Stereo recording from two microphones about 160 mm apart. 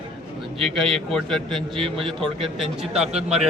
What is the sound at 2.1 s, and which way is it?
Speech, 35° right (ahead or behind).